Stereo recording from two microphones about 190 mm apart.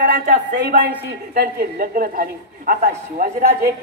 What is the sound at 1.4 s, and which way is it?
Speech, 50° right (ahead or behind).